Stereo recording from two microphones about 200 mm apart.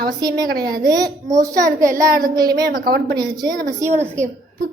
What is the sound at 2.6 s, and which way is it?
Speech, 50° right (ahead or behind).